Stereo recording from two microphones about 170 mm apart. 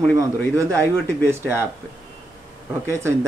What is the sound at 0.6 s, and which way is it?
Speech, 15° right (ahead or behind).